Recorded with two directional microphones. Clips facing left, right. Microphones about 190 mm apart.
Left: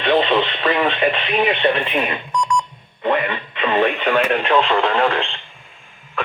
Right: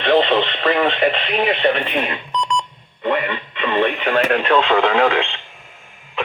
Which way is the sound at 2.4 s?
20° right (ahead or behind).